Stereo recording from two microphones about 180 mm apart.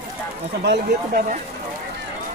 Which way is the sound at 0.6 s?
65° right (ahead or behind).